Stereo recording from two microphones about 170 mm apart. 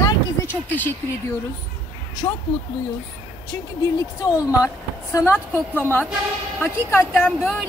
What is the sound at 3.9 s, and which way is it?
Speech, 20° left (ahead or behind).